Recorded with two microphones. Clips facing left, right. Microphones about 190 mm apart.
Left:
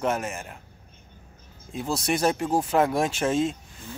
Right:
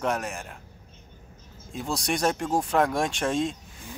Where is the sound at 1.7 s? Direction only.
Centre (ahead or behind).